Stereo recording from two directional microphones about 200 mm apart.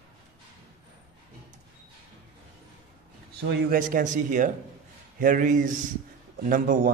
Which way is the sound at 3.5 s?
45° right (ahead or behind).